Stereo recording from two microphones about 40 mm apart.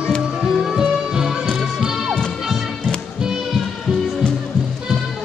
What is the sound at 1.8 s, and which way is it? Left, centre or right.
Music, centre.